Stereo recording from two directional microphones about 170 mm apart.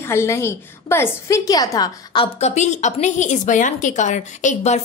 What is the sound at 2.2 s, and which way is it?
A woman's voice, 40° left (ahead or behind).